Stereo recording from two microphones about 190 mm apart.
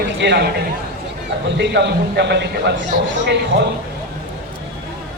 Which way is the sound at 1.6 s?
65° right (ahead or behind).